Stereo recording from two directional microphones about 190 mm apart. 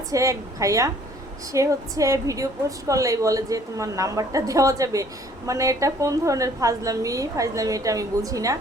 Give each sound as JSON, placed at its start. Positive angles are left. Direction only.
{"t": 0.1, "sound": "a woman's voice", "side_deg": -15}